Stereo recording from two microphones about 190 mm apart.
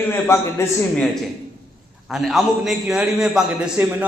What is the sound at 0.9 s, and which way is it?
A man's voice, centre (ahead or behind).